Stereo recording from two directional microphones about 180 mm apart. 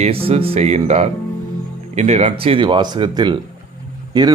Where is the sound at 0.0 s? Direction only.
30° right (ahead or behind).